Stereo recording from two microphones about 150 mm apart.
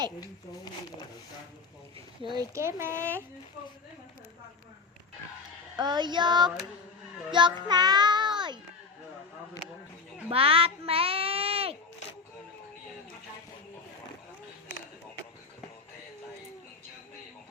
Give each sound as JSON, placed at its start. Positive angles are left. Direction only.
{"t": 2.3, "sound": "child singing", "side_deg": -20}
{"t": 3.0, "sound": "speech", "side_deg": 10}
{"t": 5.7, "sound": "child singing", "side_deg": -30}
{"t": 10.2, "sound": "a child's voice", "side_deg": -40}